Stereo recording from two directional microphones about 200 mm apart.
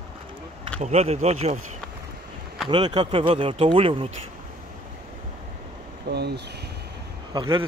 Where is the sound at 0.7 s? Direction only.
35° right (ahead or behind).